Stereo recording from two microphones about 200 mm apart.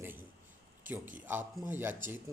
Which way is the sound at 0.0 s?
10° right (ahead or behind).